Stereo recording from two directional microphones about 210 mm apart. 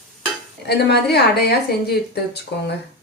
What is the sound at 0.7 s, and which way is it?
A woman's voice, 50° left (ahead or behind).